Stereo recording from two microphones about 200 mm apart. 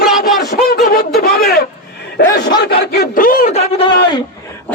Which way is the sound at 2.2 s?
55° left (ahead or behind).